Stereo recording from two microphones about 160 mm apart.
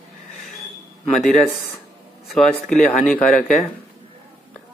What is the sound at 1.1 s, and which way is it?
Speech, centre (ahead or behind).